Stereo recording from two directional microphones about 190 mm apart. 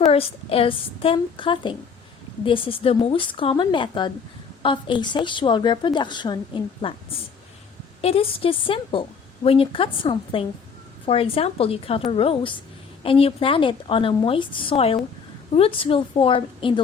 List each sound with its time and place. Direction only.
0.0 s a woman's voice: 30° left (ahead or behind)
8.0 s a woman's voice: 30° left (ahead or behind)